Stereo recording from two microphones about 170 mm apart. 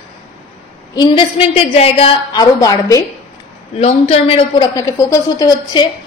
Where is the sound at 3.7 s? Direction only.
40° left (ahead or behind).